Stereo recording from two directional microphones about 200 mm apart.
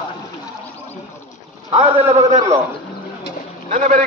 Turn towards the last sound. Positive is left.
turn(degrees=-40)  # may be behind; listen again after turning